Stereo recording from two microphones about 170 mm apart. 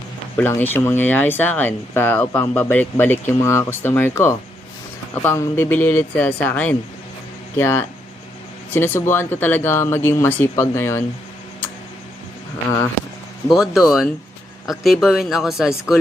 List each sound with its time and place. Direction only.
0.3 s speech: 10° left (ahead or behind)
13.5 s speech: centre (ahead or behind)